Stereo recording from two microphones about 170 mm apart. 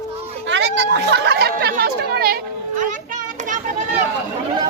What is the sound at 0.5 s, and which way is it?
Speech, 90° right.